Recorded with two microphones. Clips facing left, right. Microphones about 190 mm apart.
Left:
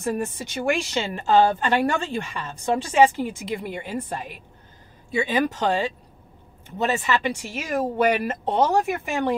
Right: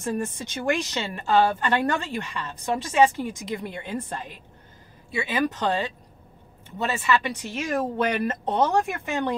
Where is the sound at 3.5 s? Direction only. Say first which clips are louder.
Left 2 dB; 10° left (ahead or behind).